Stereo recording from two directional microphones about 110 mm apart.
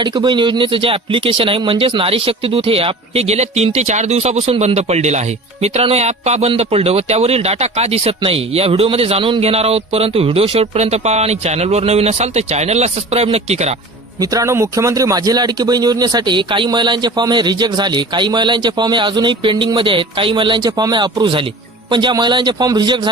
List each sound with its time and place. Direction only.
0.0 s a man's voice: 45° right (ahead or behind); by 5.2 s 90° right
5.6 s speech: 70° right (ahead or behind)
6.6 s speech: 65° right (ahead or behind)
14.2 s a man's voice: 30° right (ahead or behind)